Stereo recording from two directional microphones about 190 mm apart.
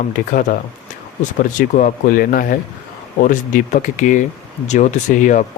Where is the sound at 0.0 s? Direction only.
45° left (ahead or behind).